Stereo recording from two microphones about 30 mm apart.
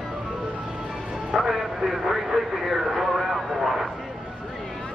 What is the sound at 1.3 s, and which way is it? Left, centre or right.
Speech, centre.